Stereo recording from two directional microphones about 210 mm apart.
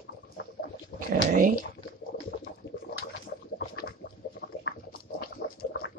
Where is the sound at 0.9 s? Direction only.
50° left (ahead or behind).